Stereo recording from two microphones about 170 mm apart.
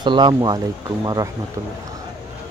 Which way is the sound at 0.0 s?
25° right (ahead or behind).